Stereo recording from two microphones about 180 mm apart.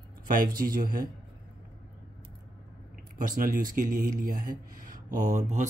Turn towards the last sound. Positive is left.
turn(degrees=-40)  # may be behind; listen again after turning